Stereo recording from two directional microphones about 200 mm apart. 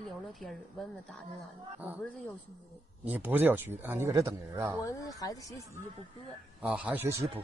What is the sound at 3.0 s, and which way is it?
Speech, 10° right (ahead or behind).